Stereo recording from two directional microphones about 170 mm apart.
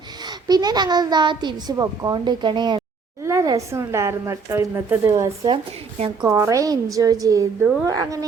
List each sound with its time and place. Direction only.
0.4 s a child's voice: 25° right (ahead or behind)